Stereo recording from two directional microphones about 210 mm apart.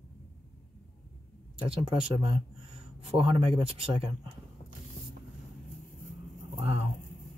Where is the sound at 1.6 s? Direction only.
25° right (ahead or behind).